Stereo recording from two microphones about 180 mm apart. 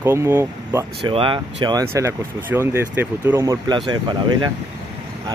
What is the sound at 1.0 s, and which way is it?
Speech, 30° right (ahead or behind).